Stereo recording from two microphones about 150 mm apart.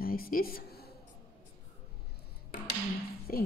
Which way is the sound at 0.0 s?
75° left (ahead or behind).